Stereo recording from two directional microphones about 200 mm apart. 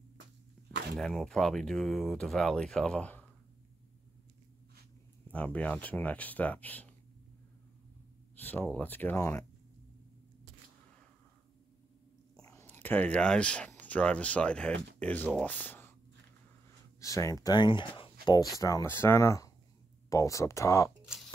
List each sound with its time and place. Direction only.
0.6 s a sound: 5° left (ahead or behind)
0.9 s speech: centre (ahead or behind)
5.3 s speech: 5° left (ahead or behind)
8.4 s speech: 10° left (ahead or behind)
12.4 s speech: 15° left (ahead or behind)
17.0 s speech: 15° left (ahead or behind)